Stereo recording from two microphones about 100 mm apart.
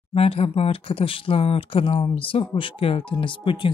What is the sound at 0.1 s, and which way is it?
Speech, 85° left.